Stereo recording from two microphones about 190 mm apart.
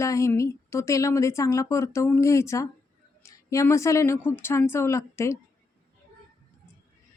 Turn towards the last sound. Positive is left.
turn(degrees=15)  # may be behind; listen again after turning